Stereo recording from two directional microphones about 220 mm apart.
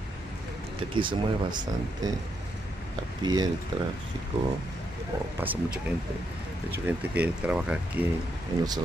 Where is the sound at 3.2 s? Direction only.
20° right (ahead or behind).